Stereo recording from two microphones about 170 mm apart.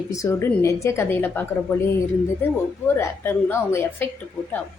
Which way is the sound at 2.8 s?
10° left (ahead or behind).